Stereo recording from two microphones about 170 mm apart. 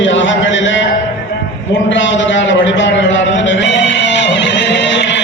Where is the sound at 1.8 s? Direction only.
90° left.